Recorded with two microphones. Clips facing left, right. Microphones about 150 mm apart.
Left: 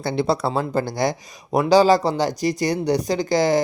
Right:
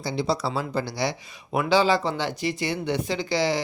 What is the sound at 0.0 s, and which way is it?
Speech, 60° left (ahead or behind).